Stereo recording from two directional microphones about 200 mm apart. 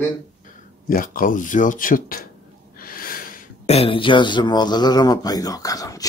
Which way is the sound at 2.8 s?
45° left (ahead or behind).